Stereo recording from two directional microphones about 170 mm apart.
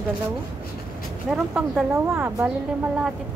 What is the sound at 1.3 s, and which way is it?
Speech, 5° right (ahead or behind).